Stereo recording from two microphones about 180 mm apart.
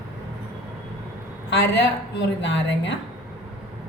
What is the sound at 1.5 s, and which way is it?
A woman's voice, 75° left (ahead or behind).